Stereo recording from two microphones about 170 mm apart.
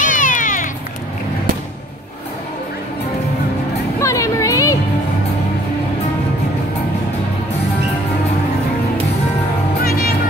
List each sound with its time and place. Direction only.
0.0 s cat: 50° left (ahead or behind)
4.0 s music: 20° left (ahead or behind)
9.8 s music: 65° left (ahead or behind)